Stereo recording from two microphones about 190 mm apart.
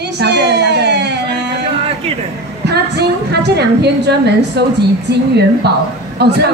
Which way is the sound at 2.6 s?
60° right (ahead or behind).